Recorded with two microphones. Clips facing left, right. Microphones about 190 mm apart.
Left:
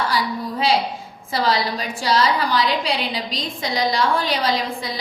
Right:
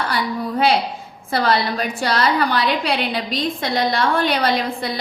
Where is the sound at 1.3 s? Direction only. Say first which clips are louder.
Right 2 dB; 60° right (ahead or behind).